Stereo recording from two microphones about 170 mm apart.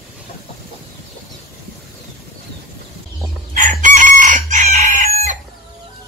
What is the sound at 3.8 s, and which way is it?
Chicken, 50° right (ahead or behind).